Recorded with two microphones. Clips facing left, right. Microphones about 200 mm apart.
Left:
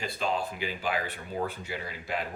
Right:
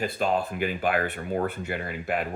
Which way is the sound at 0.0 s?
50° right (ahead or behind).